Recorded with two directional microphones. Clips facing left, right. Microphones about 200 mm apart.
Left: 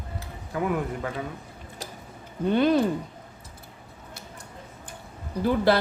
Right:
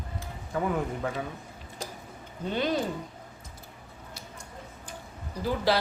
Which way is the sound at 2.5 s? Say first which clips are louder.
Left 7 dB; 55° left (ahead or behind).